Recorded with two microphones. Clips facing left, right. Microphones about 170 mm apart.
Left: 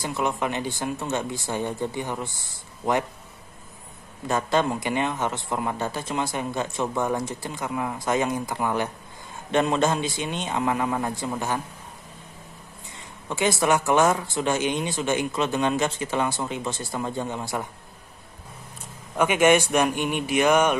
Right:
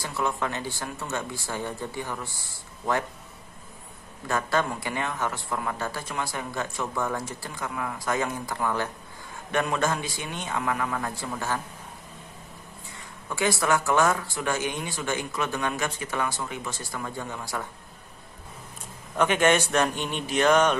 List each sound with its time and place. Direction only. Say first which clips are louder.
0.0 s speech: left 3 dB; 20° left (ahead or behind)
4.3 s speech: left 3 dB; 20° left (ahead or behind)
13.3 s speech: left 3 dB; 20° left (ahead or behind)
19.1 s speech: left 3 dB; 10° left (ahead or behind)